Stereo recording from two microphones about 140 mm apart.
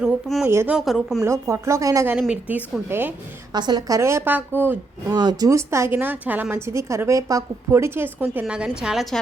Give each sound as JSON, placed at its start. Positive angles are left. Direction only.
{"t": 0.0, "sound": "speech", "side_deg": 0}
{"t": 0.4, "sound": "a woman's voice", "side_deg": -15}
{"t": 0.8, "sound": "speech", "side_deg": 0}
{"t": 1.2, "sound": "a woman's voice", "side_deg": -20}
{"t": 2.1, "sound": "a woman's voice", "side_deg": -5}
{"t": 3.5, "sound": "a woman's voice", "side_deg": -30}
{"t": 5.1, "sound": "a woman's voice", "side_deg": -30}